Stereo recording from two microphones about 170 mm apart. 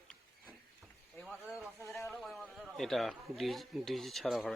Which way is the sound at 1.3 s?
5° right (ahead or behind).